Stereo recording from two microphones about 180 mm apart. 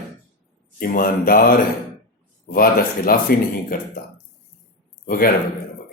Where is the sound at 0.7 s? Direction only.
55° left (ahead or behind).